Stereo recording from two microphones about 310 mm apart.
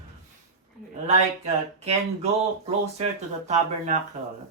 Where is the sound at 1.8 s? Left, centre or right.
Centre.